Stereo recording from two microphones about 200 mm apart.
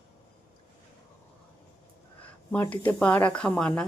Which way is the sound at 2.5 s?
10° left (ahead or behind).